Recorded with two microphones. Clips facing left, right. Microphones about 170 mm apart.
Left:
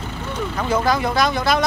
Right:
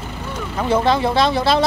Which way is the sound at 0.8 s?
25° right (ahead or behind).